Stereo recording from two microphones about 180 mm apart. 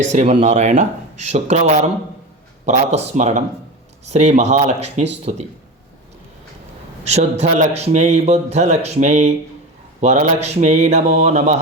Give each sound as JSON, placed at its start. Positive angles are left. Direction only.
{"t": 0.1, "sound": "a man's voice", "side_deg": -35}
{"t": 7.0, "sound": "a man's voice", "side_deg": -40}